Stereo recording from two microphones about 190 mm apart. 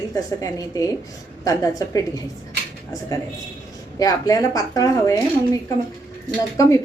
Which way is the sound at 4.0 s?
20° left (ahead or behind).